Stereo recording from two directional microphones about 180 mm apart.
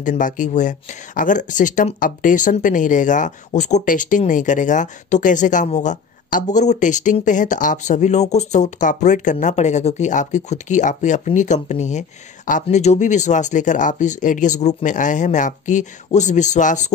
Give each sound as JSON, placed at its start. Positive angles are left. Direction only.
{"t": 0.0, "sound": "speech", "side_deg": 45}